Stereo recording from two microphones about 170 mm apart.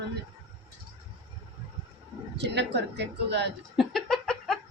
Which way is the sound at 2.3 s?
90° right.